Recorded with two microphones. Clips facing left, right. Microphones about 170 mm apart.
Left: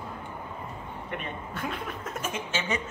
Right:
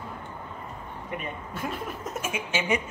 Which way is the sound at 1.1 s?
5° right (ahead or behind).